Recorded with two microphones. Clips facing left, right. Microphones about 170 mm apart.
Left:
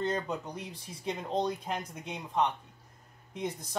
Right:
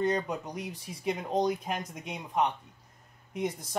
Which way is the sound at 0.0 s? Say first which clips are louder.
Right 3 dB; 15° right (ahead or behind).